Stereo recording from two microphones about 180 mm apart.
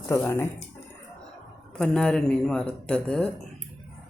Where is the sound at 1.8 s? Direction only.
5° left (ahead or behind).